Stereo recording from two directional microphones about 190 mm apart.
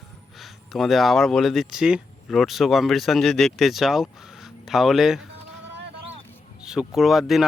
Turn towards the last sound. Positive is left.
turn(degrees=0)  # may be behind; listen again after turning